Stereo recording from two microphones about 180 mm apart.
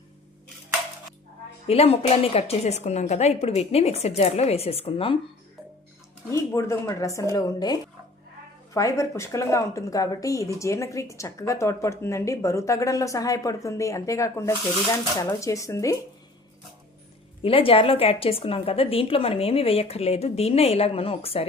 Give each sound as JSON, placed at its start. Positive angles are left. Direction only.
{"t": 1.6, "sound": "a woman's voice", "side_deg": 35}
{"t": 6.3, "sound": "speech", "side_deg": 15}
{"t": 17.4, "sound": "a woman's voice", "side_deg": 30}